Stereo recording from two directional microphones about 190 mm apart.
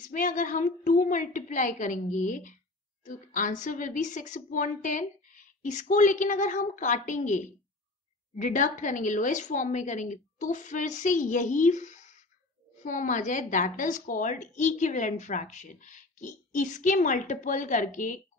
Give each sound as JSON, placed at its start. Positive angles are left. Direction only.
{"t": 0.0, "sound": "a woman's voice", "side_deg": 45}